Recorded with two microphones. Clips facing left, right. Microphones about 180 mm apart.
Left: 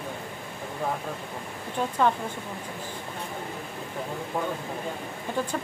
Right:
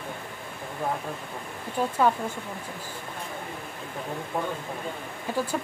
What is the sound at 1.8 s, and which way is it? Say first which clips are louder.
Speech: right 2 dB; 5° right (ahead or behind).